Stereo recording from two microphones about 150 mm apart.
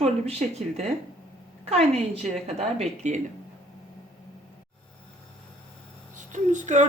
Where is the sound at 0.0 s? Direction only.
45° right (ahead or behind).